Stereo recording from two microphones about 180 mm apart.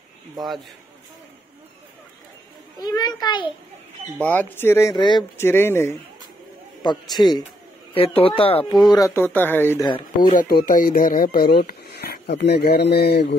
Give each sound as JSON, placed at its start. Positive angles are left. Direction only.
{"t": 2.8, "sound": "a child's voice", "side_deg": 20}
{"t": 4.2, "sound": "speech", "side_deg": 10}
{"t": 5.4, "sound": "speech", "side_deg": 15}
{"t": 6.8, "sound": "a child's voice", "side_deg": 25}
{"t": 8.8, "sound": "speech", "side_deg": 20}
{"t": 10.2, "sound": "speech", "side_deg": 50}